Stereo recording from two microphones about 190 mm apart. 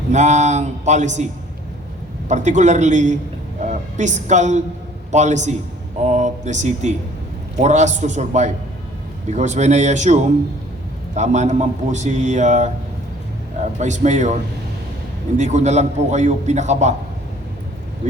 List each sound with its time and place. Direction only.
0.1 s a man's voice: 40° right (ahead or behind)
2.3 s a man's voice: 40° right (ahead or behind)
13.7 s a man's voice: 40° right (ahead or behind)
15.4 s a man's voice: 40° right (ahead or behind)
18.0 s a man's voice: 40° right (ahead or behind)